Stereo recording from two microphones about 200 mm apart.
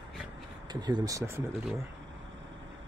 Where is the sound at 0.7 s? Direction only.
20° right (ahead or behind).